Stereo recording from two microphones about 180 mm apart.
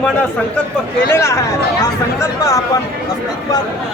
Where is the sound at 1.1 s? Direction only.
15° left (ahead or behind).